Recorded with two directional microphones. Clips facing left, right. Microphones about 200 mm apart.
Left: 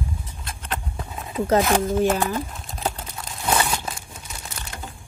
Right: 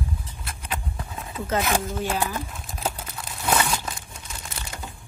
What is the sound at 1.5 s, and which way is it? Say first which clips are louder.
Speech: left 6 dB; 45° left (ahead or behind).